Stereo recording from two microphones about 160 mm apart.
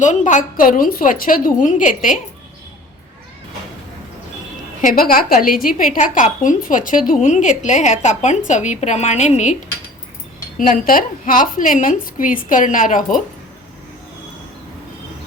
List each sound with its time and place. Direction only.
0.0 s a woman's voice: 50° left (ahead or behind)
4.8 s a woman's voice: 65° left (ahead or behind); by 9.6 s 50° left (ahead or behind)
10.6 s a woman's voice: 60° left (ahead or behind)